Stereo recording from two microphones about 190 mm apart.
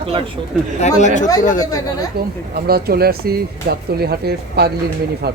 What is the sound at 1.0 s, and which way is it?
Speech, 40° left (ahead or behind).